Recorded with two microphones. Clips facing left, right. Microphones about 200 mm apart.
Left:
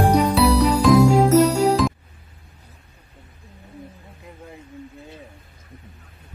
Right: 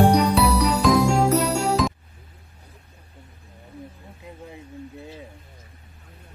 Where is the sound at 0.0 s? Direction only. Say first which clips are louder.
Left 1 dB; centre (ahead or behind).